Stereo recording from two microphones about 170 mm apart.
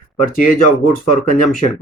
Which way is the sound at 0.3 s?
55° left (ahead or behind).